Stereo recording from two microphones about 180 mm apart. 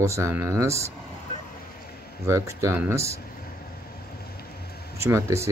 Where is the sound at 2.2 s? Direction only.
15° right (ahead or behind).